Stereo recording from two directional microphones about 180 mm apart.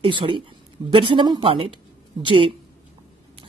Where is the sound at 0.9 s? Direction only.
30° right (ahead or behind).